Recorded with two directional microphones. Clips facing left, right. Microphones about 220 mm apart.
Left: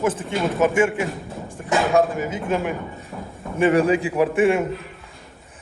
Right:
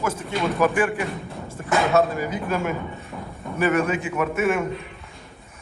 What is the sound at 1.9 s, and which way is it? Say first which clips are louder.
Speech: left 2 dB; 15° left (ahead or behind).